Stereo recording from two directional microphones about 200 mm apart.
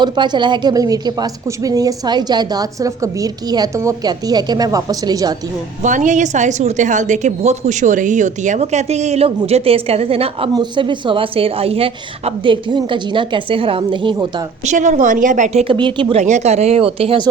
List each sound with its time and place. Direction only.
0.0 s speech: 20° right (ahead or behind)
5.8 s a woman's voice: 40° right (ahead or behind); by 14.4 s 25° right (ahead or behind)
14.6 s a woman's voice: 35° right (ahead or behind)
16.2 s a woman's voice: 35° right (ahead or behind)